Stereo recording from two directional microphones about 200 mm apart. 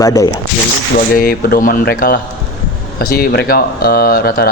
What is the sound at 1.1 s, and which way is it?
Speech, 50° left (ahead or behind).